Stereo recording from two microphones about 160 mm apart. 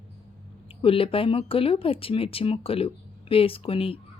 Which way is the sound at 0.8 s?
35° left (ahead or behind).